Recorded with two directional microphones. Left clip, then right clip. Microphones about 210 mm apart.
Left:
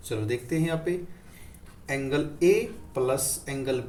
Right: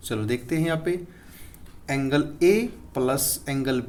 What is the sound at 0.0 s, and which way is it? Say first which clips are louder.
Speech: right 2 dB; 50° right (ahead or behind).